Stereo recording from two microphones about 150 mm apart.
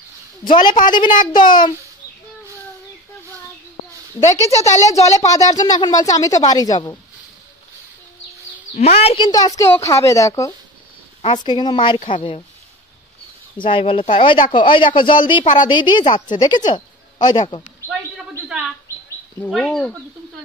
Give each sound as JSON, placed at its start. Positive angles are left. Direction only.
{"t": 0.5, "sound": "speech", "side_deg": 30}
{"t": 4.5, "sound": "speech", "side_deg": 45}
{"t": 5.1, "sound": "speech", "side_deg": 20}
{"t": 8.7, "sound": "speech", "side_deg": 45}
{"t": 9.3, "sound": "speech", "side_deg": 25}
{"t": 13.6, "sound": "speech", "side_deg": 35}
{"t": 15.4, "sound": "a woman's voice", "side_deg": 55}
{"t": 15.7, "sound": "speech", "side_deg": 30}
{"t": 19.5, "sound": "speech", "side_deg": 5}